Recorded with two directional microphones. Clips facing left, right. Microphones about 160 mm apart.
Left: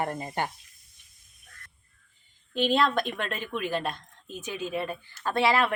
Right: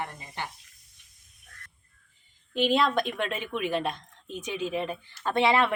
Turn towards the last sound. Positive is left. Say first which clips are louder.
# right 1 dB
turn(degrees=-25)  # may be behind; listen again after turning